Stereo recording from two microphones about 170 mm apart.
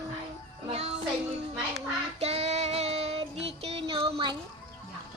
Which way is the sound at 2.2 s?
40° right (ahead or behind).